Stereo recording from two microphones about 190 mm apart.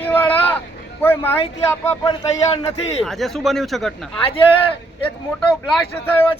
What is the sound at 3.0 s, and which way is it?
Speech, centre (ahead or behind).